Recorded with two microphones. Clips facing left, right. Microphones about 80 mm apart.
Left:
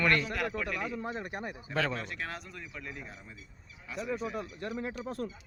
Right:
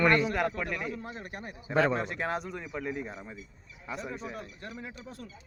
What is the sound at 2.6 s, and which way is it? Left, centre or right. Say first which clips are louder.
Speech: right 8 dB; right.